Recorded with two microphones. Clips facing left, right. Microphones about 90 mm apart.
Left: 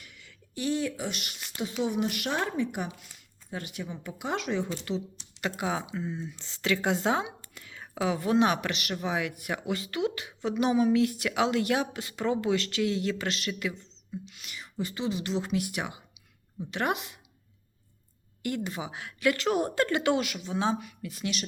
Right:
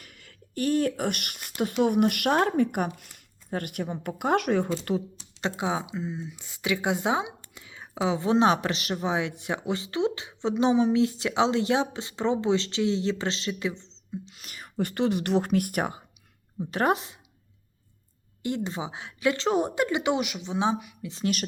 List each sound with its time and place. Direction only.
0.0 s a woman's voice: 45° right (ahead or behind)
5.4 s speech: 20° right (ahead or behind)
14.3 s whispering: 40° right (ahead or behind)
14.8 s a woman's voice: 60° right (ahead or behind); by 17.2 s 35° right (ahead or behind)
18.4 s speech: 25° right (ahead or behind)